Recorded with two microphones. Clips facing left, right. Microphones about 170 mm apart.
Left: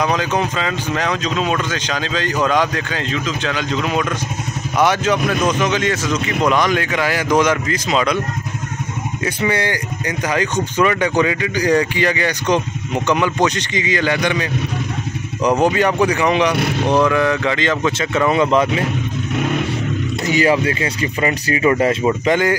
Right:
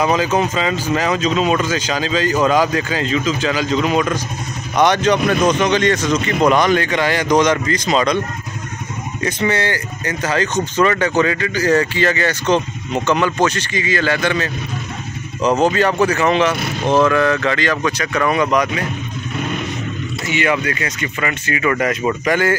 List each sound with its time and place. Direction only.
0.0 s speech: 5° right (ahead or behind)
9.2 s speech: 10° left (ahead or behind); by 18.9 s 25° left (ahead or behind)
20.2 s speech: 35° left (ahead or behind)